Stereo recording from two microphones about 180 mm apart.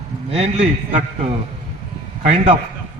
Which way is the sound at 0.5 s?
35° right (ahead or behind).